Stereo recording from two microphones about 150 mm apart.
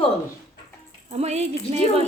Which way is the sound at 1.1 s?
45° right (ahead or behind).